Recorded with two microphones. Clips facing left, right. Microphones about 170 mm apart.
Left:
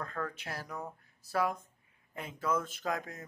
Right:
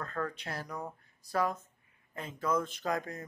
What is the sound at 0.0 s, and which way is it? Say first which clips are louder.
Speech: right 2 dB; 10° left (ahead or behind).